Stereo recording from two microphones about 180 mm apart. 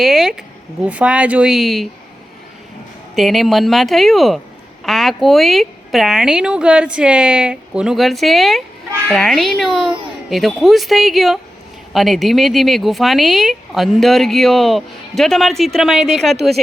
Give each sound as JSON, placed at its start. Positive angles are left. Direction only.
{"t": 0.0, "sound": "speech", "side_deg": 0}
{"t": 3.2, "sound": "speech", "side_deg": 0}